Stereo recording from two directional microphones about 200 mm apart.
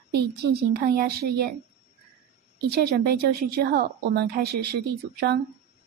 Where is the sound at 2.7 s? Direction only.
50° right (ahead or behind).